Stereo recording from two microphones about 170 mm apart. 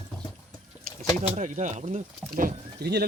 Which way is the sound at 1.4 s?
45° right (ahead or behind).